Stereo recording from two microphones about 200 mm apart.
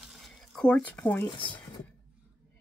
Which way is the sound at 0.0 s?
Centre (ahead or behind).